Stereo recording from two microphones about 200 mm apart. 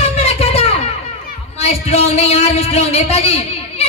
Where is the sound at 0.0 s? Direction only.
30° left (ahead or behind).